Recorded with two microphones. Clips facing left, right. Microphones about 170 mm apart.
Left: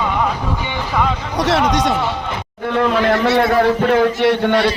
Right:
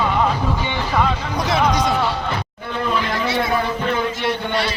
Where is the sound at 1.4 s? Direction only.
85° left.